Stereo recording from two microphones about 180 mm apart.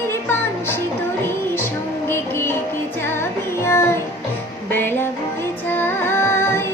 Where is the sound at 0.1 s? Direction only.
10° left (ahead or behind).